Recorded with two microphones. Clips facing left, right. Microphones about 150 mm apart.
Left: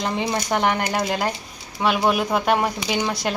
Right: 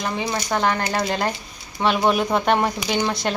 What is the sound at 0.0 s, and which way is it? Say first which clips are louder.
A woman's voice: left 1 dB; 20° left (ahead or behind).